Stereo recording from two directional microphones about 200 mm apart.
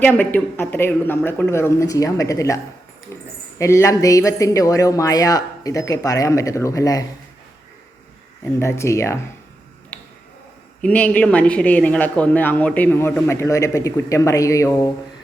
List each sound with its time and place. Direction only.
0.0 s speech: 10° left (ahead or behind)
3.1 s a sound: 15° left (ahead or behind)
3.6 s speech: 15° left (ahead or behind)
8.5 s speech: 15° left (ahead or behind)
9.9 s a sound: 5° left (ahead or behind)
10.8 s speech: 5° left (ahead or behind)